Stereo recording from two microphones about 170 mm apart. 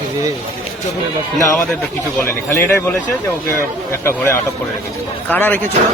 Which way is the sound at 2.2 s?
15° left (ahead or behind).